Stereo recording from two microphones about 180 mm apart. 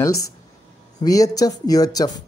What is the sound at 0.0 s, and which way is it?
Speech, 20° left (ahead or behind).